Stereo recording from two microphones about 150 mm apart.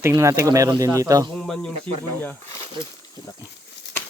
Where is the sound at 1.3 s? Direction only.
5° left (ahead or behind).